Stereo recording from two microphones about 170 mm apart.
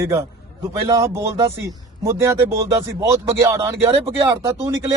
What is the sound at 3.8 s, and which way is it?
Speech, 35° right (ahead or behind).